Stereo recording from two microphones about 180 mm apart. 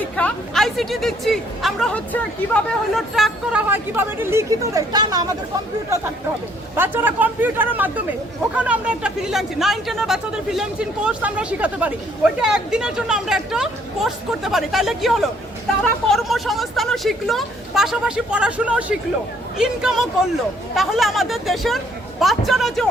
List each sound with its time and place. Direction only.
0.2 s speech: 5° left (ahead or behind)
3.7 s speech: 10° right (ahead or behind)
6.7 s speech: 10° right (ahead or behind)